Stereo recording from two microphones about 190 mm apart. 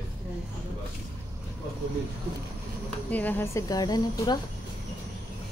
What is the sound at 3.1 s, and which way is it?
Speech, 10° left (ahead or behind).